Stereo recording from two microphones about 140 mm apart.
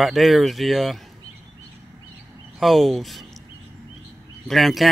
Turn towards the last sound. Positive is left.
turn(degrees=0)  # may be behind; listen again after turning